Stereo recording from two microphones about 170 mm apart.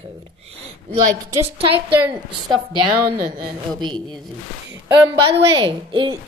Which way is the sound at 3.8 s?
25° right (ahead or behind).